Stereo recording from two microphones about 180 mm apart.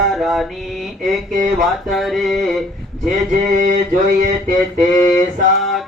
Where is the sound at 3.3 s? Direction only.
45° right (ahead or behind).